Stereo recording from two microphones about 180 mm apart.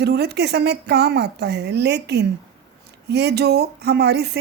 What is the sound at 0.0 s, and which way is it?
Speech, 65° right (ahead or behind).